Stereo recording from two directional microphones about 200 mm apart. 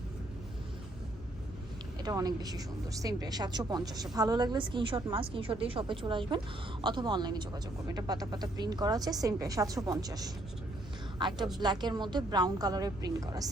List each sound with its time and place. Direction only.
2.0 s speech: 20° right (ahead or behind)